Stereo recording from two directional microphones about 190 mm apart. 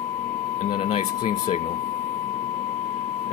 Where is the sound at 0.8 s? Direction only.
30° left (ahead or behind).